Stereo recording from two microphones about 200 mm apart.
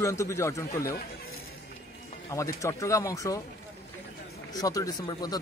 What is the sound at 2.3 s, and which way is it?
A man's voice, 15° left (ahead or behind).